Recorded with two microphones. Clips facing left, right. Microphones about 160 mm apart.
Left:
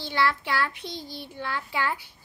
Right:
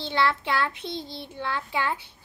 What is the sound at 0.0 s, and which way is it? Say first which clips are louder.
A child's voice: right 1 dB; 25° right (ahead or behind).